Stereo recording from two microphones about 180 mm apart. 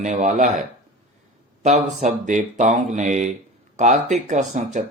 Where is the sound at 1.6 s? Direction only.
40° right (ahead or behind).